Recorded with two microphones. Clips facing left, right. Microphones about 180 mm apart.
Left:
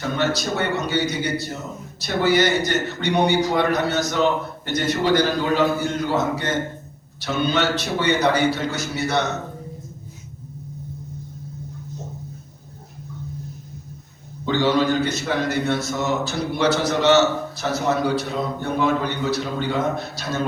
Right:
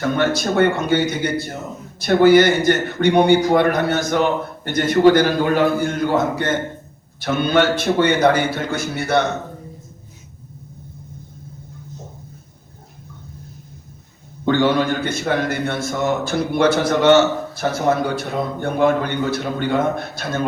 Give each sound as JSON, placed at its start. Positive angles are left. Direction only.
{"t": 0.0, "sound": "a man's voice", "side_deg": -55}
{"t": 14.4, "sound": "a man's voice", "side_deg": -55}